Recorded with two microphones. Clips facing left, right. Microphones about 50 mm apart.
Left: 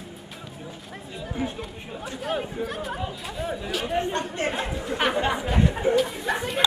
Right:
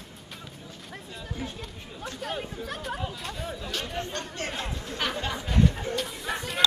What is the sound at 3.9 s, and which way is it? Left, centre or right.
Chatter, left.